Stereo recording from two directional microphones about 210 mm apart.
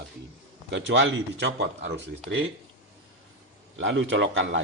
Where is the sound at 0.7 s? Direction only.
60° right (ahead or behind).